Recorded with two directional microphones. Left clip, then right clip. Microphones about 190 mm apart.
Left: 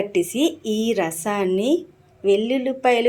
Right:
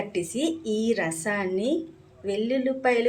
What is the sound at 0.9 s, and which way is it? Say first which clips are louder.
Speech: left 4 dB; 30° left (ahead or behind).